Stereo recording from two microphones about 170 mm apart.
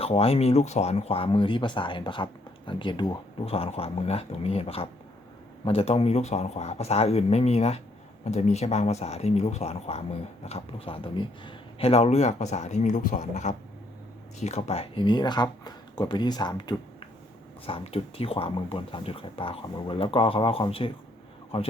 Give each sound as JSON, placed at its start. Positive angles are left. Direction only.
{"t": 0.0, "sound": "speech", "side_deg": 35}